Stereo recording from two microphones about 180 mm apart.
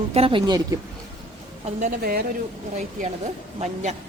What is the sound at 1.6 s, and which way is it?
Speech, 50° right (ahead or behind).